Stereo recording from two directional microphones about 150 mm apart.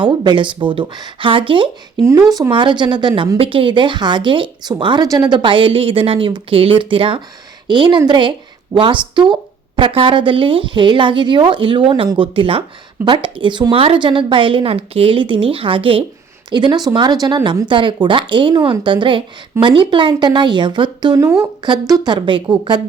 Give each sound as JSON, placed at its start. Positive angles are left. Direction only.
{"t": 0.0, "sound": "a woman's voice", "side_deg": -35}
{"t": 2.0, "sound": "a woman's voice", "side_deg": -20}
{"t": 2.5, "sound": "a woman's voice", "side_deg": -30}